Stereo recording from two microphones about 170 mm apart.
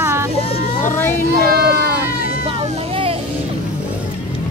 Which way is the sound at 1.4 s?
70° right (ahead or behind).